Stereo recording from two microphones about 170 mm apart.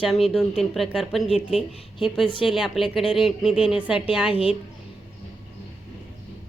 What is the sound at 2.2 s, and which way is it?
Speech, 30° left (ahead or behind).